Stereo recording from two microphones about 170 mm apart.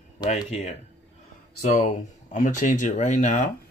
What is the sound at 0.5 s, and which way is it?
Speech, 40° left (ahead or behind).